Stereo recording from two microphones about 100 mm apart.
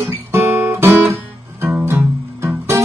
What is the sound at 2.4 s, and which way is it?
Music, 25° right (ahead or behind).